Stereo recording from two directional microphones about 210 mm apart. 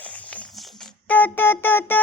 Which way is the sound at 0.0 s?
5° left (ahead or behind).